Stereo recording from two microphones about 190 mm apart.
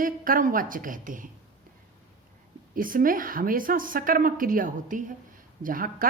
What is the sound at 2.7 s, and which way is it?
Speech, 45° right (ahead or behind).